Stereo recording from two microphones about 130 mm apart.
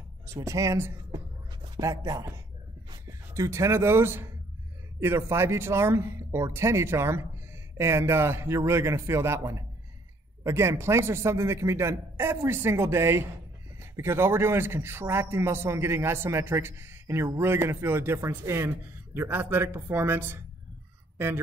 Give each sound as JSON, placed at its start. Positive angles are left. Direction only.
{"t": 0.3, "sound": "a man's voice", "side_deg": -25}